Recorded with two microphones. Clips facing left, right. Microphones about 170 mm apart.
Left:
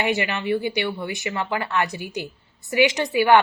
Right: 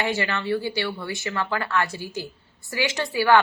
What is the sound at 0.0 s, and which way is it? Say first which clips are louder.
Speech: left 2 dB; 15° left (ahead or behind).